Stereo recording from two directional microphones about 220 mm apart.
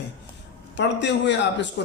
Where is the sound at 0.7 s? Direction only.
50° left (ahead or behind).